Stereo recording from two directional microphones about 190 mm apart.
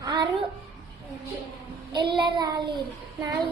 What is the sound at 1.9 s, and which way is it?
Speech, 25° right (ahead or behind).